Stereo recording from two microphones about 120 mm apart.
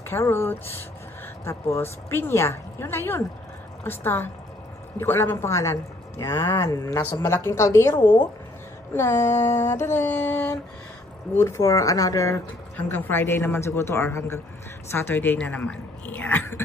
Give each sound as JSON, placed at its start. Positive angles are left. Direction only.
{"t": 0.1, "sound": "a man's voice", "side_deg": 20}
{"t": 7.0, "sound": "a man's voice", "side_deg": 15}
{"t": 12.7, "sound": "a man's voice", "side_deg": 15}